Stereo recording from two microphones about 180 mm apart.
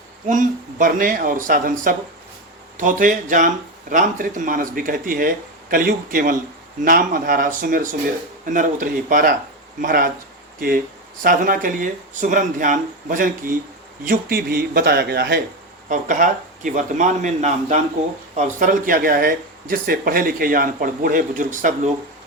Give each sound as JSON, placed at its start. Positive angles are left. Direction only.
{"t": 0.3, "sound": "speech", "side_deg": -45}
{"t": 2.7, "sound": "speech", "side_deg": -45}
{"t": 11.2, "sound": "a man's voice", "side_deg": -50}
{"t": 15.9, "sound": "speech", "side_deg": -45}